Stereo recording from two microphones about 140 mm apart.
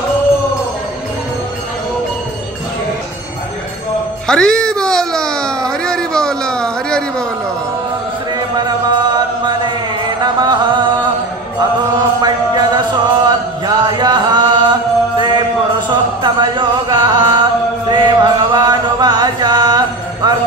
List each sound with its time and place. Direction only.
4.3 s a sound: 5° left (ahead or behind)
8.5 s mantra: 30° right (ahead or behind)
10.2 s music: 30° right (ahead or behind)
12.2 s chant: 30° right (ahead or behind)